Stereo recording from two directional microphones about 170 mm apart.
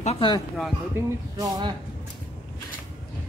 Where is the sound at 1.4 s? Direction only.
25° right (ahead or behind).